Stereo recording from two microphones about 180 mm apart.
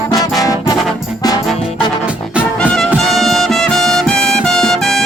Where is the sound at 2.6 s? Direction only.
5° left (ahead or behind).